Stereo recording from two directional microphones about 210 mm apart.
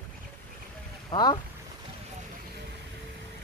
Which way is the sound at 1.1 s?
20° left (ahead or behind).